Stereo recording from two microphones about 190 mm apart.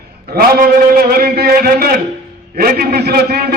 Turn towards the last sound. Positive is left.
turn(degrees=-55)  # may be behind; listen again after turning